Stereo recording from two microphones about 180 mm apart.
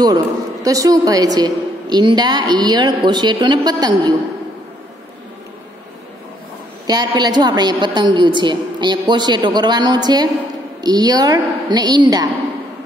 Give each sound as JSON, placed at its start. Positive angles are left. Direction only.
{"t": 0.0, "sound": "a woman's voice", "side_deg": -20}
{"t": 6.9, "sound": "a woman's voice", "side_deg": -20}